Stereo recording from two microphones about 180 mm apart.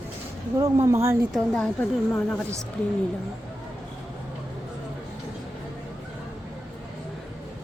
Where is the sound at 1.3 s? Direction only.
5° left (ahead or behind).